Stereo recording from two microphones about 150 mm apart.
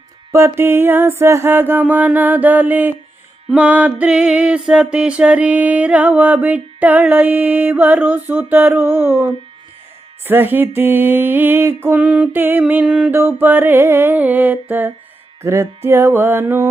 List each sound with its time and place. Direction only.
0.3 s music: 20° right (ahead or behind)